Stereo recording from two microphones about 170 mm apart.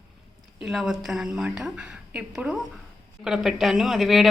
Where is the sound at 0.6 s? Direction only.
Centre (ahead or behind).